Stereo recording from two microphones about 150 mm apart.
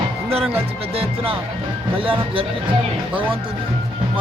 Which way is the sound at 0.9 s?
40° right (ahead or behind).